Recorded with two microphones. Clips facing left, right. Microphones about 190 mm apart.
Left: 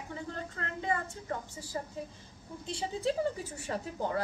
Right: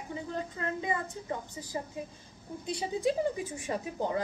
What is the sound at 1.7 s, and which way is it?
A woman's voice, 15° right (ahead or behind).